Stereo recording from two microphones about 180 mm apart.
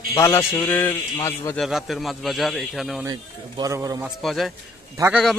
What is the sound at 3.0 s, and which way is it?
Speech, 20° right (ahead or behind).